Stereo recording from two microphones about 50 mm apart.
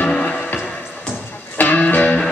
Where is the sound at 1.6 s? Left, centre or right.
Left.